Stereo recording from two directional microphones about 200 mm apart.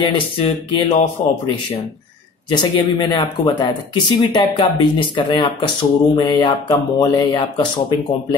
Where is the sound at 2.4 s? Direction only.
20° left (ahead or behind).